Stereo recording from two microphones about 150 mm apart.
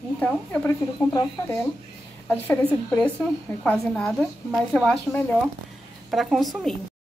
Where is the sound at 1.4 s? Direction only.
20° left (ahead or behind).